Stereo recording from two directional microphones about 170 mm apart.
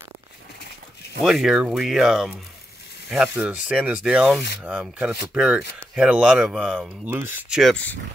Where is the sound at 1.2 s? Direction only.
Centre (ahead or behind).